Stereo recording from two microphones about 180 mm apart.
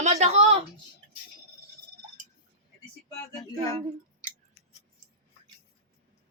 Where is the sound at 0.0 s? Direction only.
40° right (ahead or behind).